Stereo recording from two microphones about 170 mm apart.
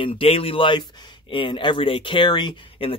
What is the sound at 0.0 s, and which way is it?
Speech, 35° left (ahead or behind).